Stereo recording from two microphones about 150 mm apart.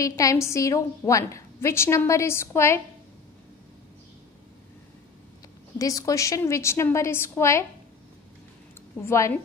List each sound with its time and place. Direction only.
0.0 s a woman's voice: 20° left (ahead or behind)
5.8 s a woman's voice: 20° left (ahead or behind)
9.0 s a woman's voice: 15° left (ahead or behind)